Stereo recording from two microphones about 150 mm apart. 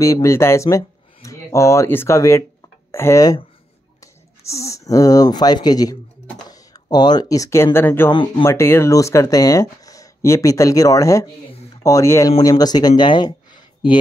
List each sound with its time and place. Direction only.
0.0 s speech: 20° left (ahead or behind)
8.1 s speech: 30° left (ahead or behind)
8.5 s speech: 20° left (ahead or behind)